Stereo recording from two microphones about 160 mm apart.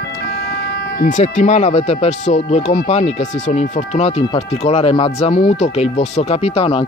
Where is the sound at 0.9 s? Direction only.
50° left (ahead or behind).